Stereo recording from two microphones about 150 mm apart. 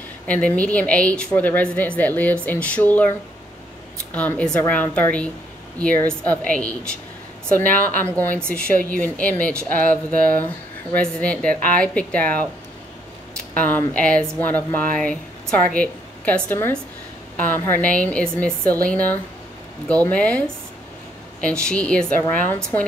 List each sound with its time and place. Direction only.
0.3 s a woman's voice: 10° left (ahead or behind)
8.0 s a woman's voice: 10° left (ahead or behind)
13.6 s a woman's voice: 10° left (ahead or behind)